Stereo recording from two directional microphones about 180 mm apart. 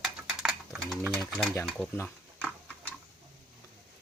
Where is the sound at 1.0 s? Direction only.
15° right (ahead or behind).